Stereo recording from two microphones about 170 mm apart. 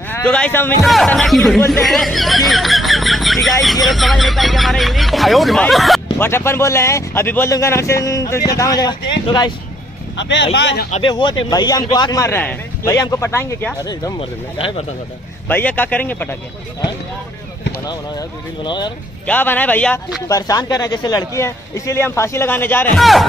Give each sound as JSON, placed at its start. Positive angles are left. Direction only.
{"t": 0.1, "sound": "speech", "side_deg": 5}
{"t": 0.8, "sound": "speech", "side_deg": 0}
{"t": 1.7, "sound": "a sound", "side_deg": 0}
{"t": 3.6, "sound": "speech", "side_deg": 0}
{"t": 6.1, "sound": "speech", "side_deg": 15}
{"t": 10.1, "sound": "speech", "side_deg": 90}
{"t": 10.9, "sound": "speech", "side_deg": 30}
{"t": 15.4, "sound": "speech", "side_deg": 10}
{"t": 18.6, "sound": "speech", "side_deg": 25}
{"t": 19.2, "sound": "speech", "side_deg": 10}
{"t": 20.2, "sound": "speech", "side_deg": 20}
{"t": 22.9, "sound": "speech", "side_deg": 0}